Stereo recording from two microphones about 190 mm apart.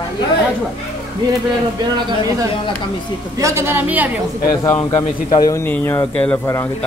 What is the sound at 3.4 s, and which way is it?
Speech, 15° right (ahead or behind).